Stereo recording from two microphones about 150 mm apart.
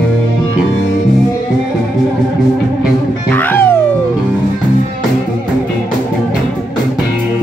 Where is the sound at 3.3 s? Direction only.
10° left (ahead or behind).